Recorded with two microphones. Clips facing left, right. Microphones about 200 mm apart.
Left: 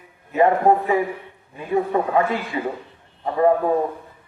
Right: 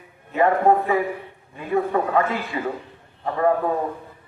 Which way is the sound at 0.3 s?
20° left (ahead or behind).